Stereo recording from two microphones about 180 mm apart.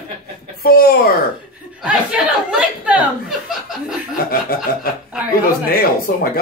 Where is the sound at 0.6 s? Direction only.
55° left (ahead or behind).